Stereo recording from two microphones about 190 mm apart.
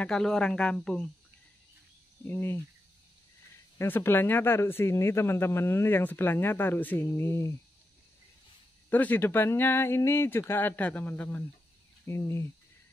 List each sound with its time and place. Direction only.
0.0 s speech: 5° left (ahead or behind)
2.2 s speech: 10° left (ahead or behind)
3.7 s speech: 10° left (ahead or behind)
8.9 s speech: 10° left (ahead or behind)